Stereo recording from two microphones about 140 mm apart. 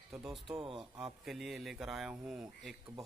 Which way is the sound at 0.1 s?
Centre (ahead or behind).